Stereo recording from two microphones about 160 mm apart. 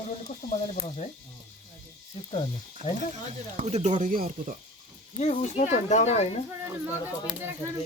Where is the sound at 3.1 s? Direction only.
45° right (ahead or behind).